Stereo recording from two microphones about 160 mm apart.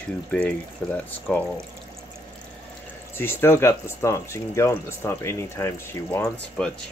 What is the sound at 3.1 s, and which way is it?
Speech, 15° left (ahead or behind).